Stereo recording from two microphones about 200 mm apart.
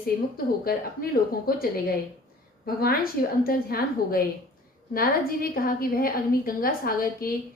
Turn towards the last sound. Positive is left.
turn(degrees=45)  # may be behind; listen again after turning